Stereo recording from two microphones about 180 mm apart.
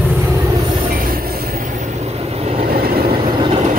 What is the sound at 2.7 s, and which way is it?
Vehicle, 55° right (ahead or behind).